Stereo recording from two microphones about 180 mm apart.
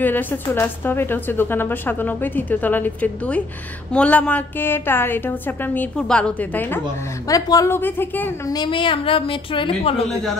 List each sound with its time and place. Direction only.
0.0 s a woman's voice: 10° left (ahead or behind)
8.5 s a woman's voice: 30° left (ahead or behind)